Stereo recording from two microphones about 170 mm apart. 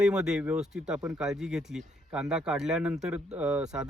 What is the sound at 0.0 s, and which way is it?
Speech, 5° right (ahead or behind).